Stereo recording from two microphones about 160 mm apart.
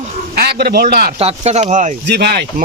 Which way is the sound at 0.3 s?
85° right.